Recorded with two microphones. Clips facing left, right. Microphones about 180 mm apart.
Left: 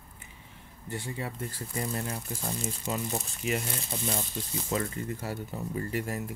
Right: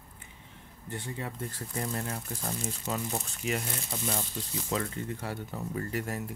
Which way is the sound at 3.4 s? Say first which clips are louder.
Left 1 dB; centre (ahead or behind).